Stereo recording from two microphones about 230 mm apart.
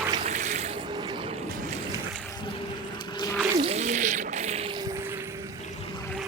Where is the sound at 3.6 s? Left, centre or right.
Right; by 5.5 s centre.